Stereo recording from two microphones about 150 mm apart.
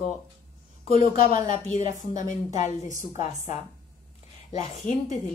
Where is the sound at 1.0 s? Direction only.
55° left (ahead or behind).